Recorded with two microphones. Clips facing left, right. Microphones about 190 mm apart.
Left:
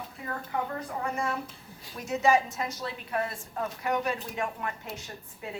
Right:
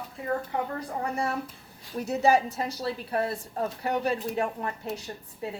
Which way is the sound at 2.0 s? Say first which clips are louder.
Right 2 dB; 35° right (ahead or behind).